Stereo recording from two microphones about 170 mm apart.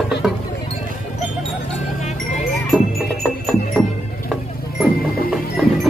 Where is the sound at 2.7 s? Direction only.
Centre (ahead or behind).